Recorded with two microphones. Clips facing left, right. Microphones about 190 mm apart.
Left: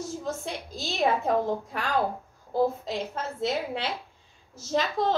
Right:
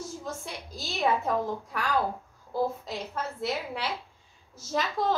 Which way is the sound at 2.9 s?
25° left (ahead or behind).